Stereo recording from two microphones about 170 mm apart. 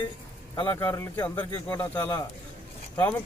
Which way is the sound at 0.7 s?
15° left (ahead or behind).